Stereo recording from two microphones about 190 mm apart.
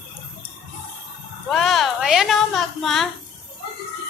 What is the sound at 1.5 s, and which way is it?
A woman's voice, centre (ahead or behind).